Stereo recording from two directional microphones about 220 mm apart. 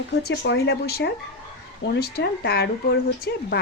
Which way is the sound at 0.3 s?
50° left (ahead or behind).